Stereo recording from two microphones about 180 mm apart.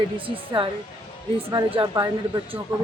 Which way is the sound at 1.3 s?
25° right (ahead or behind).